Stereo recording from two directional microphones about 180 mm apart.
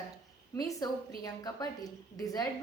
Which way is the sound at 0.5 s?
20° left (ahead or behind).